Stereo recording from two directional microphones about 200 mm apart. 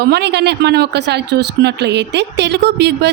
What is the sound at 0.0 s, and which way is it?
Speech, 55° right (ahead or behind).